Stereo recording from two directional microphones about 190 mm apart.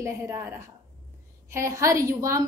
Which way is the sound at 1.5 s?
15° right (ahead or behind).